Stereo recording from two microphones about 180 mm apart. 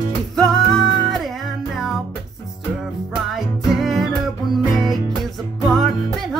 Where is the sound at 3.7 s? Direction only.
Centre (ahead or behind).